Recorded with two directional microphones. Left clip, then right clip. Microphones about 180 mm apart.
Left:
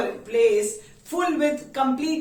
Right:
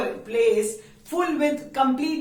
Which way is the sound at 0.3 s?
15° right (ahead or behind).